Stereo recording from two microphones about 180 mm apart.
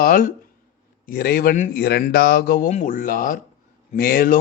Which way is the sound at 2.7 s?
45° left (ahead or behind).